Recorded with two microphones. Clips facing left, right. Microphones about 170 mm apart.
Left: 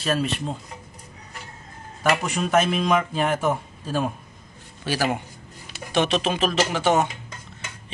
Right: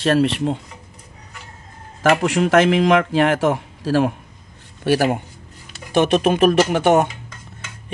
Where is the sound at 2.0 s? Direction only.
90° right.